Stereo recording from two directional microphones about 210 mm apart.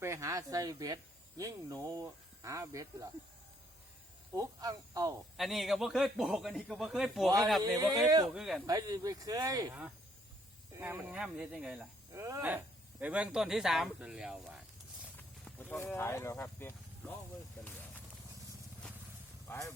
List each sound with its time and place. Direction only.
0.0 s a sound: 15° right (ahead or behind)
1.4 s speech: 15° right (ahead or behind)
4.4 s speech: 15° right (ahead or behind)
5.4 s speech: centre (ahead or behind)
7.9 s speech: 15° right (ahead or behind)
8.3 s speech: centre (ahead or behind)
8.6 s speech: 15° right (ahead or behind)
10.8 s speech: 10° right (ahead or behind)
12.1 s speech: 15° right (ahead or behind)
15.1 s a sound: 10° left (ahead or behind)
19.5 s speech: 15° left (ahead or behind)